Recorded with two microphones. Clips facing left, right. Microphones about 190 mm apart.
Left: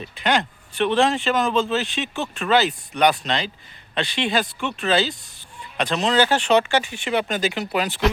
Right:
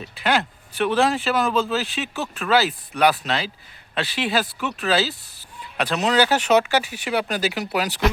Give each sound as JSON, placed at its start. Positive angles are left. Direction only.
{"t": 0.0, "sound": "speech", "side_deg": -5}